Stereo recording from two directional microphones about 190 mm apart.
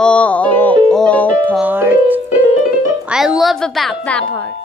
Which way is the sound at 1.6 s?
10° right (ahead or behind).